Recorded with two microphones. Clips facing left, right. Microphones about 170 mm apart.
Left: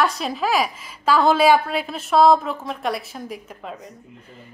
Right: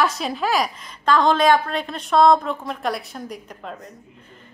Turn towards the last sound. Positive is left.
turn(degrees=0)  # may be behind; listen again after turning